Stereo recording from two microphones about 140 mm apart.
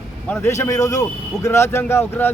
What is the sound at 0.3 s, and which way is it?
A man's voice, 20° left (ahead or behind).